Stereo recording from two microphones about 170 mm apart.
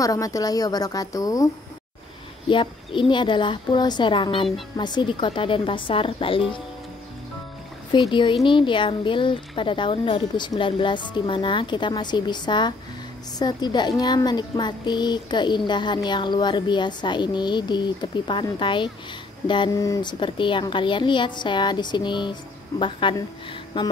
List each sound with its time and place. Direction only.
0.0 s speech: 20° left (ahead or behind)
2.5 s speech: 30° left (ahead or behind)
7.9 s speech: 30° left (ahead or behind)